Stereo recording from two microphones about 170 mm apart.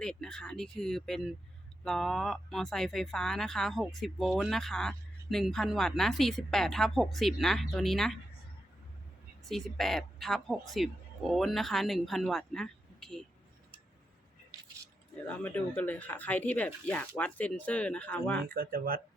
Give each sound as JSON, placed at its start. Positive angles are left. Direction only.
{"t": 0.0, "sound": "speech", "side_deg": 5}
{"t": 9.5, "sound": "speech", "side_deg": 0}
{"t": 15.3, "sound": "speech", "side_deg": 10}
{"t": 18.4, "sound": "speech", "side_deg": -60}